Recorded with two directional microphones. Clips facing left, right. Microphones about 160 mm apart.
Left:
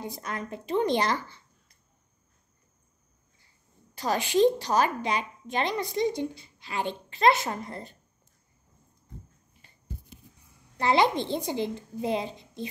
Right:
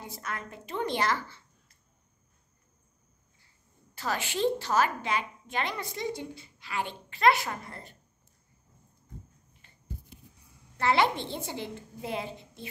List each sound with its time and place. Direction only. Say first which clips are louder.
0.1 s a woman's voice: left 4 dB; 20° left (ahead or behind)
4.2 s a woman's voice: left 8 dB; 15° left (ahead or behind)
10.8 s a woman's voice: left 3 dB; 15° left (ahead or behind)